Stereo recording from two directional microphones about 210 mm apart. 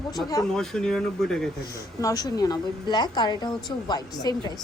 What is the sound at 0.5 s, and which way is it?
Speech, centre (ahead or behind).